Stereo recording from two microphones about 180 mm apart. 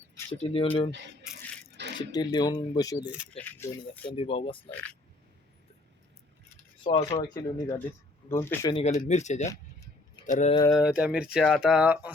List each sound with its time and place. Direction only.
0.3 s speech: 30° left (ahead or behind)
1.7 s coin: 70° right (ahead or behind)
2.0 s speech: 25° left (ahead or behind)
3.0 s speech: 10° right (ahead or behind)
3.3 s speech: 10° left (ahead or behind)
4.1 s speech: 30° left (ahead or behind)
6.8 s speech: 25° left (ahead or behind)
8.7 s speech: 40° left (ahead or behind)
9.5 s a sound: 20° left (ahead or behind)
10.2 s speech: 40° left (ahead or behind)
10.7 s speech: 5° right (ahead or behind)